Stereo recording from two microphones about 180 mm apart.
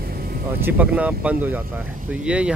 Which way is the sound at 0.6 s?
5° right (ahead or behind).